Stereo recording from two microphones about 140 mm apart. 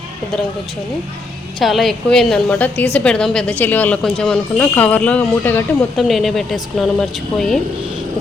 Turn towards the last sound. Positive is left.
turn(degrees=5)  # may be behind; listen again after turning